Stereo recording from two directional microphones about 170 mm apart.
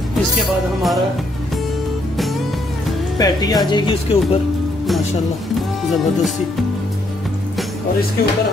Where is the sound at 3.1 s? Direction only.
20° left (ahead or behind).